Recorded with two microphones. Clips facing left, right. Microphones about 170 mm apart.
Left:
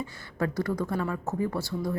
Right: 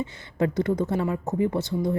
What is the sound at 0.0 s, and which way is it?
Speech, 20° right (ahead or behind).